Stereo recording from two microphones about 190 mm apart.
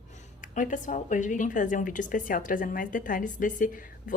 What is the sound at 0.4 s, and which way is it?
A woman's voice, 45° left (ahead or behind).